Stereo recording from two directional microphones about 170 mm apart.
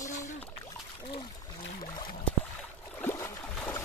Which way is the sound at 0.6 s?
25° left (ahead or behind).